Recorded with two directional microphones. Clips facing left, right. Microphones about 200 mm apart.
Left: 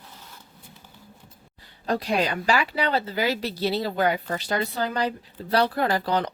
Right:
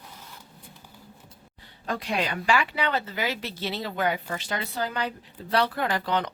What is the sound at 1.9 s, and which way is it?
A woman's voice, 35° left (ahead or behind).